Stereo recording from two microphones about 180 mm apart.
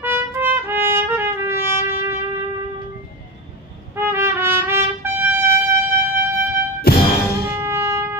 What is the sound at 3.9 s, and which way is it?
Trumpet, 15° right (ahead or behind).